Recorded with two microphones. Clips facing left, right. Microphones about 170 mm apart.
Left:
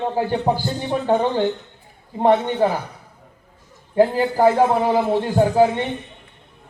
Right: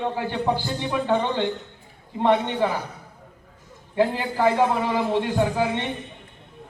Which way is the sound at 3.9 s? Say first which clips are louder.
Left 6 dB; 45° left (ahead or behind).